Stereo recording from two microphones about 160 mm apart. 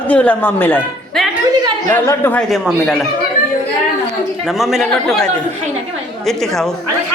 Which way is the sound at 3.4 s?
55° left (ahead or behind).